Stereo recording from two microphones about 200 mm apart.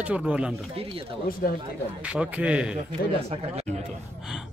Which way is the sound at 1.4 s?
50° left (ahead or behind).